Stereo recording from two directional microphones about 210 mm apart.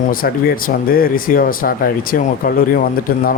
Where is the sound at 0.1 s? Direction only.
45° left (ahead or behind).